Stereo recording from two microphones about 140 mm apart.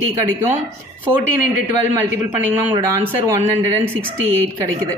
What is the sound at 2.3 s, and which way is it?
Speech, 15° right (ahead or behind).